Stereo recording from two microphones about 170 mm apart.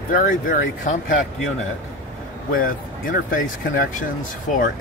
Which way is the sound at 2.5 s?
55° left (ahead or behind).